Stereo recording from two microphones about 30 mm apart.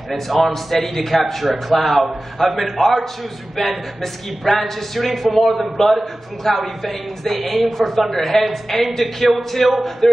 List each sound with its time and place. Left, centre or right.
0.1 s a woman's voice: centre